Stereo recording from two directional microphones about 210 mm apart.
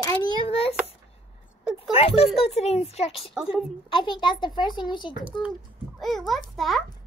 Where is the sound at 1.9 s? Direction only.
25° left (ahead or behind).